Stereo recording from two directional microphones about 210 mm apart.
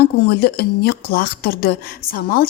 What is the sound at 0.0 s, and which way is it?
Speech, 50° left (ahead or behind).